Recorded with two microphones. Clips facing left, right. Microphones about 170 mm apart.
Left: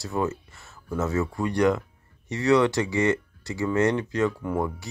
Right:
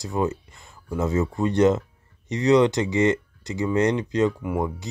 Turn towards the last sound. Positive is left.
turn(degrees=-15)  # may be behind; listen again after turning